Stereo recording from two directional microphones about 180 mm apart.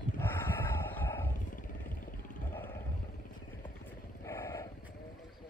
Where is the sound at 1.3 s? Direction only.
45° left (ahead or behind).